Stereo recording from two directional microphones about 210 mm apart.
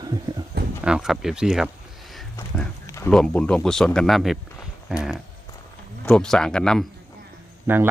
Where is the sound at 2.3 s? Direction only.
15° left (ahead or behind).